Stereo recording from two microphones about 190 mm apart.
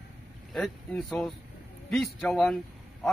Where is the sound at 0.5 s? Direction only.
Centre (ahead or behind).